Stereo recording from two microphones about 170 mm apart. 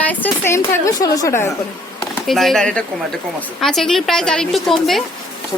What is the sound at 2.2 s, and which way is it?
Speech, centre (ahead or behind).